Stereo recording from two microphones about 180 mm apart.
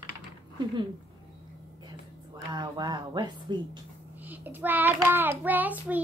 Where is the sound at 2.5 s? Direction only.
25° right (ahead or behind).